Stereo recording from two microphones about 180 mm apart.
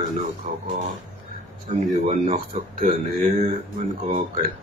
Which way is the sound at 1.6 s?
45° right (ahead or behind).